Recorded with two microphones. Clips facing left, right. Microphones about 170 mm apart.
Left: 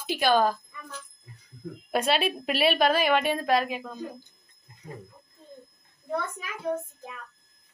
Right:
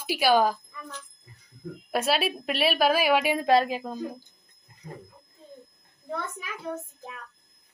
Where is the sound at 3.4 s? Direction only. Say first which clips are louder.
Right 3 dB; 30° right (ahead or behind).